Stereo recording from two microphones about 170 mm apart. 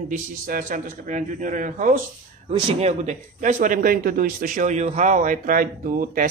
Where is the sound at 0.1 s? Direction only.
55° right (ahead or behind).